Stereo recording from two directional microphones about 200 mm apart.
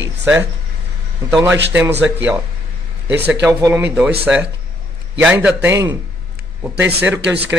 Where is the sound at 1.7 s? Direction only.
10° right (ahead or behind).